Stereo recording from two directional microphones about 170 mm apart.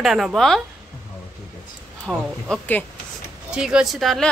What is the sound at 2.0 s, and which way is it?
Speech, 5° left (ahead or behind).